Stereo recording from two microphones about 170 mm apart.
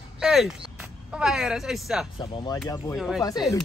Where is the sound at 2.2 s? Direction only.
30° left (ahead or behind).